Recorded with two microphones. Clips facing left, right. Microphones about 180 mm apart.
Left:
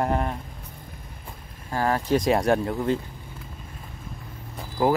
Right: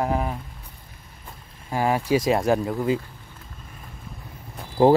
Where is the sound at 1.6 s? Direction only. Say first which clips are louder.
Right 2 dB; 15° right (ahead or behind).